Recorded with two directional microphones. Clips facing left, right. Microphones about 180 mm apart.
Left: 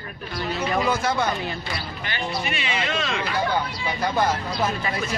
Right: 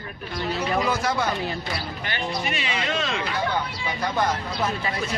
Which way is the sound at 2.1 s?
40° right (ahead or behind).